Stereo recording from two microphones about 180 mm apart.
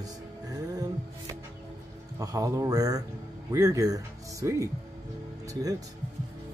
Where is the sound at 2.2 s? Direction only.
20° right (ahead or behind).